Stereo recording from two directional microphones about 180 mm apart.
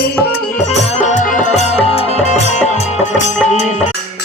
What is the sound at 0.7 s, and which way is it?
Music, 40° left (ahead or behind).